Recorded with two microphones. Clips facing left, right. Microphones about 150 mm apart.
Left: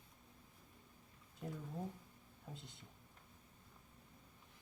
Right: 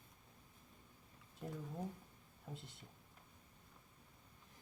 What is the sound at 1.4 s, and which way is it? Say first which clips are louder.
Speech: even; centre (ahead or behind).